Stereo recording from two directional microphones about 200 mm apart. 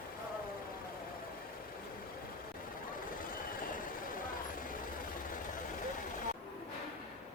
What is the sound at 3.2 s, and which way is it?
Vehicle, 45° left (ahead or behind).